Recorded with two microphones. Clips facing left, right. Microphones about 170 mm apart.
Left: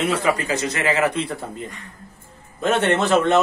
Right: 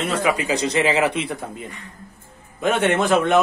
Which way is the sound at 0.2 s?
10° right (ahead or behind).